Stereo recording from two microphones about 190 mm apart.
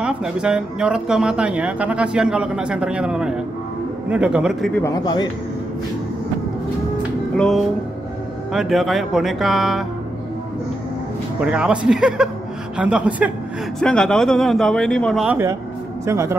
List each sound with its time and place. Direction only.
0.0 s speech: 5° right (ahead or behind)
4.8 s speech: 20° left (ahead or behind)
7.3 s speech: centre (ahead or behind)
11.4 s speech: 5° right (ahead or behind)
16.1 s a man's voice: 15° right (ahead or behind)